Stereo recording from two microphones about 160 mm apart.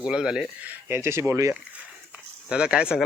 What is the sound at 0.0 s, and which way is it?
Speech, 5° right (ahead or behind).